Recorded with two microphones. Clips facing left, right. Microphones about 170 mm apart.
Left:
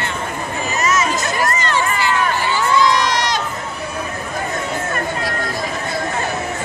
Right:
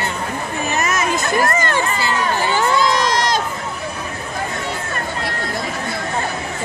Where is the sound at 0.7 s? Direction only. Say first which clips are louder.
Left 2 dB; 55° right (ahead or behind).